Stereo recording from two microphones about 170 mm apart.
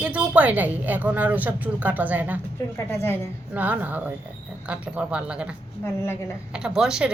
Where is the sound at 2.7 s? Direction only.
15° left (ahead or behind).